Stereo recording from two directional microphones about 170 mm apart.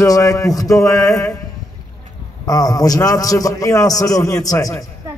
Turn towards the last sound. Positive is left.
turn(degrees=20)  # may be behind; listen again after turning